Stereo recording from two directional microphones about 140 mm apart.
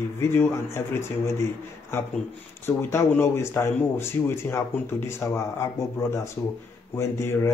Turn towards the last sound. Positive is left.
turn(degrees=20)  # may be behind; listen again after turning